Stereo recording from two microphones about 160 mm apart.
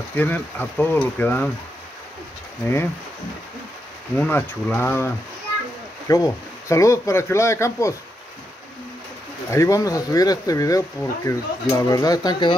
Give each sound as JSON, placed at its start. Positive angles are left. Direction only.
{"t": 0.1, "sound": "speech", "side_deg": 10}
{"t": 4.2, "sound": "speech", "side_deg": 15}
{"t": 9.5, "sound": "speech", "side_deg": 20}